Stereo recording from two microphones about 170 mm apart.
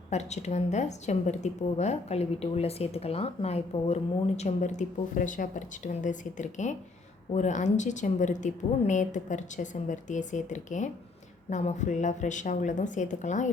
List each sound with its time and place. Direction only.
0.1 s a woman's voice: 40° left (ahead or behind)